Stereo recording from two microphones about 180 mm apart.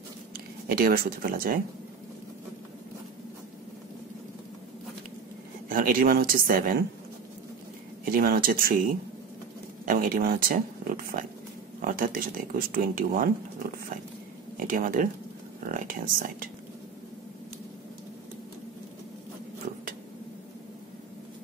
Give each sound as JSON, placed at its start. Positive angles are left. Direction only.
{"t": 0.7, "sound": "speech", "side_deg": -55}
{"t": 5.7, "sound": "speech", "side_deg": -50}
{"t": 8.0, "sound": "speech", "side_deg": -50}